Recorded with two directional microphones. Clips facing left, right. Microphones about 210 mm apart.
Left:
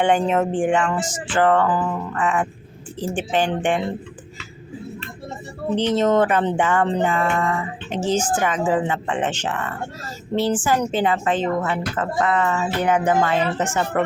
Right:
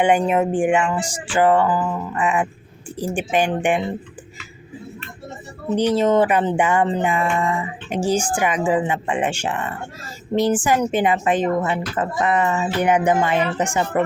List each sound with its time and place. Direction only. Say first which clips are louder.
0.0 s speech: right 1 dB; 10° right (ahead or behind)
5.7 s speech: right 1 dB; 10° right (ahead or behind)